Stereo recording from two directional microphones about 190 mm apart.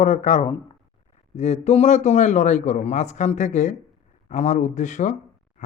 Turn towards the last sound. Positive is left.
turn(degrees=40)  # may be behind; listen again after turning